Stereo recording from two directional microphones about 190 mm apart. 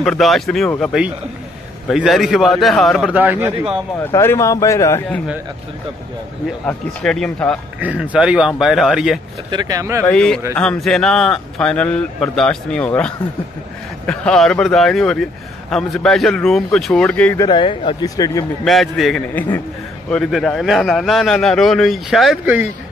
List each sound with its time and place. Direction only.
0.0 s speech: centre (ahead or behind)
4.0 s speech: 15° left (ahead or behind)
6.6 s speech: 5° left (ahead or behind)
7.8 s speech: 5° right (ahead or behind)
9.5 s speech: 20° right (ahead or behind)
10.0 s speech: 5° left (ahead or behind)
17.4 s speech: 25° left (ahead or behind)
18.6 s speech: centre (ahead or behind)